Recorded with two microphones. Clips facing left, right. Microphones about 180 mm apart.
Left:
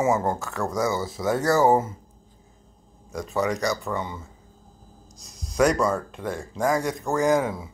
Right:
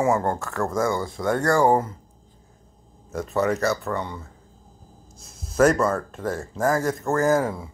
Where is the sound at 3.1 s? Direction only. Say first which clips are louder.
Right 2 dB; centre (ahead or behind).